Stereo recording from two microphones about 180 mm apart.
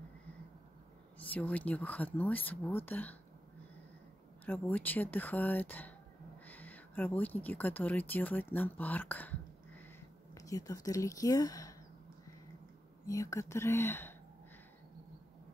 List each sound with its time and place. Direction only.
1.3 s speech: 10° left (ahead or behind)
4.5 s speech: 10° left (ahead or behind)
13.0 s speech: 20° left (ahead or behind)